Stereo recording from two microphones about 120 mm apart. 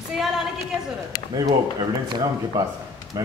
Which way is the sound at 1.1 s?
35° right (ahead or behind).